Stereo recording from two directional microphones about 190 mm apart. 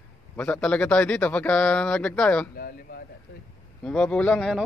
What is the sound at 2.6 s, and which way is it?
Speech, 55° left (ahead or behind).